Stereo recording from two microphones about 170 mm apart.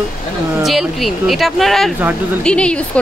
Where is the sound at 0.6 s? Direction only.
Centre (ahead or behind).